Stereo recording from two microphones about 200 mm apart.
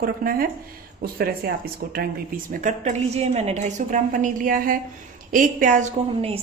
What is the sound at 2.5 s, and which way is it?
A woman's voice, 35° right (ahead or behind).